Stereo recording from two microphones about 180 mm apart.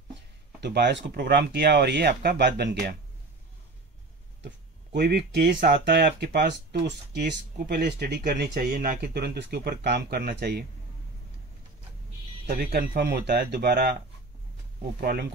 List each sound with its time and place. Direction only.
0.6 s speech: 70° right (ahead or behind)
4.9 s speech: 65° right (ahead or behind)
12.4 s speech: 55° right (ahead or behind)
15.0 s speech: 60° right (ahead or behind)